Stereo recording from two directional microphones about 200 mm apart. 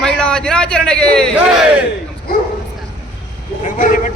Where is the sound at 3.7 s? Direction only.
40° left (ahead or behind).